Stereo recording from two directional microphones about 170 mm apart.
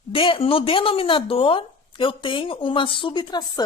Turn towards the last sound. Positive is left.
turn(degrees=25)  # may be behind; listen again after turning